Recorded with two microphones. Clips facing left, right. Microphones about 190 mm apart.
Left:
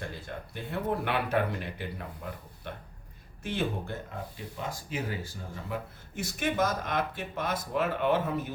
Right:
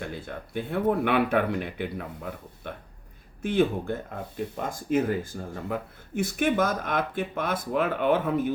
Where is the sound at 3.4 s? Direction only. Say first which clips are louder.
Right 8 dB; 55° right (ahead or behind).